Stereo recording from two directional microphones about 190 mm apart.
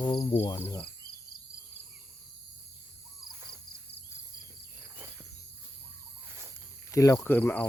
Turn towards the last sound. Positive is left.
turn(degrees=10)  # may be behind; listen again after turning